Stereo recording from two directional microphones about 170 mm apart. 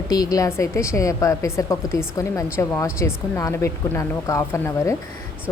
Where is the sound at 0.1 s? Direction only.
20° left (ahead or behind).